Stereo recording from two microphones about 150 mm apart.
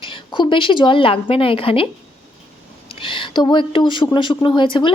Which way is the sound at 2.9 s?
35° left (ahead or behind).